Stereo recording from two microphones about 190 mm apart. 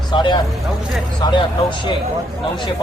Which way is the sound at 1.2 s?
25° left (ahead or behind).